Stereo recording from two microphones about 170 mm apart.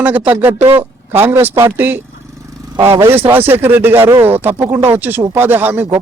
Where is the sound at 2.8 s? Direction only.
30° right (ahead or behind).